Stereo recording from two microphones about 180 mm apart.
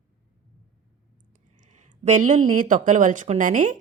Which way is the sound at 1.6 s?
40° right (ahead or behind).